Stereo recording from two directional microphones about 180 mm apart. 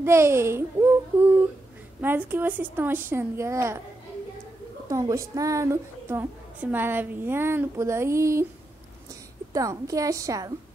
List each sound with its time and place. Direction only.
0.0 s a woman's voice: 15° right (ahead or behind)
2.0 s a woman's voice: 10° right (ahead or behind)
4.8 s a woman's voice: 15° right (ahead or behind)
9.5 s a woman's voice: 20° right (ahead or behind)